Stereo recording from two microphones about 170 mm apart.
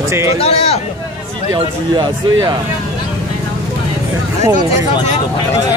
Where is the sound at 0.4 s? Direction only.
35° left (ahead or behind).